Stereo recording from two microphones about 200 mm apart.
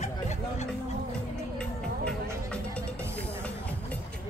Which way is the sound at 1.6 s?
5° left (ahead or behind).